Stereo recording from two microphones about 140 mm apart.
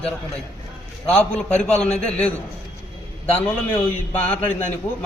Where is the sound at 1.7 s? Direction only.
55° left (ahead or behind).